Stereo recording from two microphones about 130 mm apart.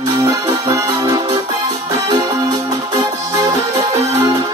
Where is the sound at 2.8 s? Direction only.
35° right (ahead or behind).